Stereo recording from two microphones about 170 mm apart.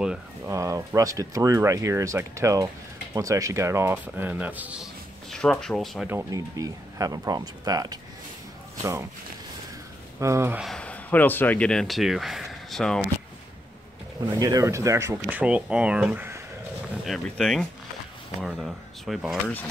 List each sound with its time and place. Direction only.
0.5 s speech: 20° right (ahead or behind)
5.3 s speech: 5° left (ahead or behind)
6.0 s speech: 15° right (ahead or behind)
10.2 s speech: 15° right (ahead or behind)
10.6 s speech: 5° left (ahead or behind)
14.3 s speech: 20° right (ahead or behind)
15.2 s speech: 5° right (ahead or behind)